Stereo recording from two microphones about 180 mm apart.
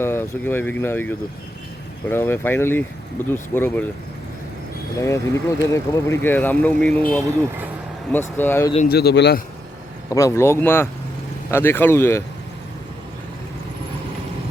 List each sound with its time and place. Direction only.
0.0 s speech: 15° left (ahead or behind)
4.9 s speech: 15° left (ahead or behind)
8.1 s speech: 10° left (ahead or behind)
8.9 s speech: 65° left (ahead or behind)
10.1 s speech: 15° left (ahead or behind)